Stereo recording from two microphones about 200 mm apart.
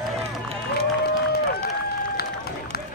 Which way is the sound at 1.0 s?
50° left (ahead or behind).